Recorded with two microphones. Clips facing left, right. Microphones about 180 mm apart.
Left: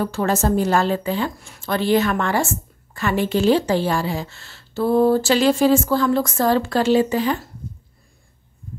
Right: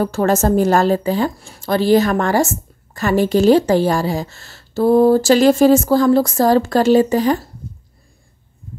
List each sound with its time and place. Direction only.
0.0 s a woman's voice: 45° right (ahead or behind)